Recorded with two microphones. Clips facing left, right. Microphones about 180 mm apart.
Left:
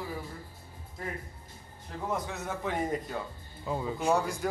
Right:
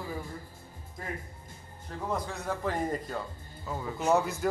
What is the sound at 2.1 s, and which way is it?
A man's voice, 5° left (ahead or behind).